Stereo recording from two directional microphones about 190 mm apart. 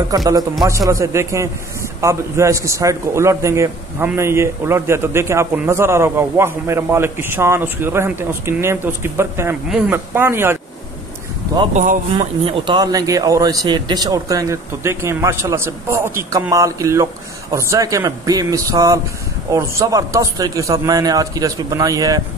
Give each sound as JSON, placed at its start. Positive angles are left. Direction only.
{"t": 0.1, "sound": "a man's voice", "side_deg": -20}
{"t": 9.7, "sound": "a woman's voice", "side_deg": 0}
{"t": 11.7, "sound": "speech", "side_deg": -45}
{"t": 12.2, "sound": "a man's voice", "side_deg": -30}